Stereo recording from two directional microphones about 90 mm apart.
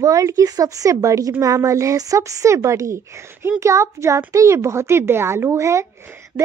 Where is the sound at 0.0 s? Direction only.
40° right (ahead or behind).